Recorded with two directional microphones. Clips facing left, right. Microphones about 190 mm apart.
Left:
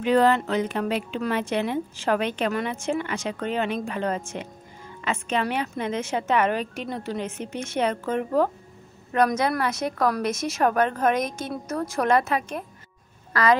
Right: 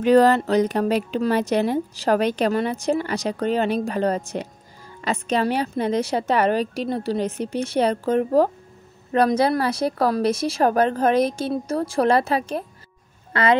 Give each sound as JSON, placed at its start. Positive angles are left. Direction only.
{"t": 0.0, "sound": "a woman's voice", "side_deg": -40}